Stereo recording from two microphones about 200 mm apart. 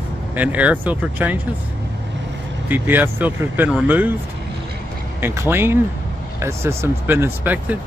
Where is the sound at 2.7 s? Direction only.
10° right (ahead or behind).